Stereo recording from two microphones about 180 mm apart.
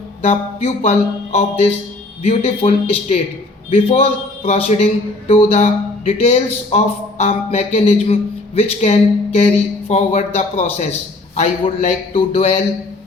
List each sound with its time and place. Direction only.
0.3 s speech: 35° left (ahead or behind)